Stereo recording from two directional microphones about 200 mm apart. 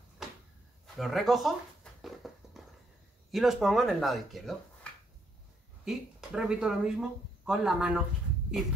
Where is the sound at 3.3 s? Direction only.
Centre (ahead or behind).